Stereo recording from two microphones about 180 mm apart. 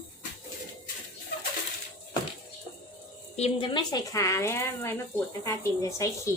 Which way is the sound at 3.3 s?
35° left (ahead or behind).